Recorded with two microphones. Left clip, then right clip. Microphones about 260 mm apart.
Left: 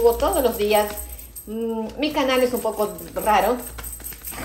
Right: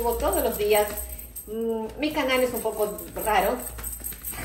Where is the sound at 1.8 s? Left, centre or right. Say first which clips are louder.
Left 4 dB; left.